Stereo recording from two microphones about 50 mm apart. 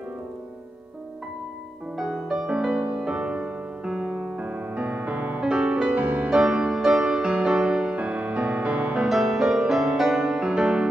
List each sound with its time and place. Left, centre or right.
2.0 s music: centre
4.4 s music: right
5.4 s music: centre
5.9 s music: right
6.3 s music: centre
9.1 s music: centre